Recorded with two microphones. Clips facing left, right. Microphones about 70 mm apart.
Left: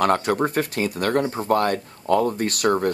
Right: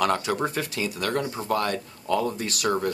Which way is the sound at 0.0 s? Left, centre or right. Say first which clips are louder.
Left 4 dB; left.